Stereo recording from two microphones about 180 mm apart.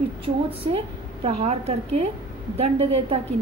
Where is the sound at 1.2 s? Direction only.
35° right (ahead or behind).